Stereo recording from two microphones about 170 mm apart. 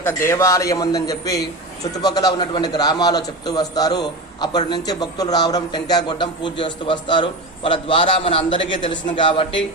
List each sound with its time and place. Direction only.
0.0 s a man's voice: 15° left (ahead or behind)